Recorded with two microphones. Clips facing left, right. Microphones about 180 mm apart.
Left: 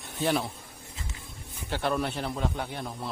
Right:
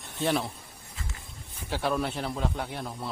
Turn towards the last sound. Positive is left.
turn(degrees=0)  # may be behind; listen again after turning